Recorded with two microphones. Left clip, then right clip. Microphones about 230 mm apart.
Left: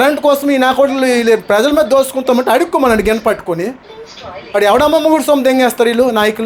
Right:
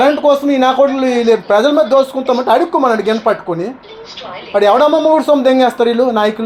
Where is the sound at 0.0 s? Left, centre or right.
Left.